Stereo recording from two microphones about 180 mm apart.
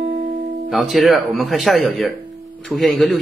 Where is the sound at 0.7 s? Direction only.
Centre (ahead or behind).